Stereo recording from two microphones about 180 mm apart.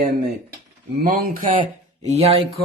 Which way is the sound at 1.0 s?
55° right (ahead or behind).